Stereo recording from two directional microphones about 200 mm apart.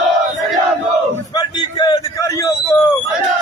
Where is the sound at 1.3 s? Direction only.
20° left (ahead or behind).